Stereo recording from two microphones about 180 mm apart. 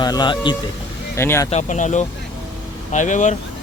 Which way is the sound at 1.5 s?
40° left (ahead or behind).